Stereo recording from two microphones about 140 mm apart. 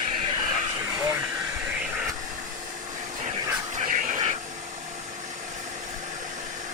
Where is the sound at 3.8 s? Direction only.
65° right (ahead or behind).